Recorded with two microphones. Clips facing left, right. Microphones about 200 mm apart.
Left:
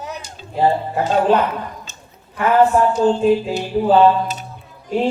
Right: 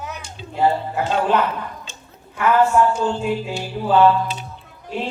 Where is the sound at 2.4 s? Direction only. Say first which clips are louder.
Left 2 dB; 35° left (ahead or behind).